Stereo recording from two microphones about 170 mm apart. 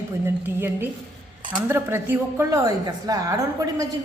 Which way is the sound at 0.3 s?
15° right (ahead or behind).